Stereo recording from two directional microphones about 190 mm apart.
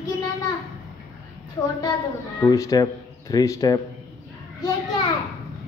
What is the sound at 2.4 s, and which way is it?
Speech, 15° left (ahead or behind).